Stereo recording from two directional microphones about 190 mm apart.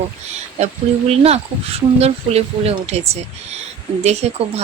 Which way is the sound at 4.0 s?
35° right (ahead or behind).